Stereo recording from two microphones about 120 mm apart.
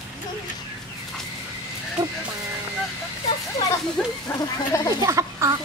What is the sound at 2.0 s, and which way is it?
Music, 35° right (ahead or behind).